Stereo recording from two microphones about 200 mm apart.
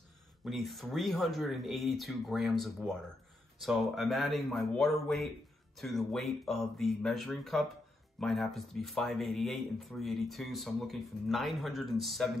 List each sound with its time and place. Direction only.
0.5 s speech: centre (ahead or behind)